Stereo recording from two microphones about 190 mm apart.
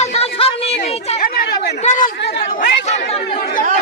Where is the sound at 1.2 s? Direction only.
50° left (ahead or behind).